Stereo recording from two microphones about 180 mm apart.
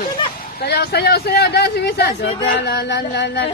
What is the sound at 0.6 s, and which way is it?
A man's voice, 60° left (ahead or behind).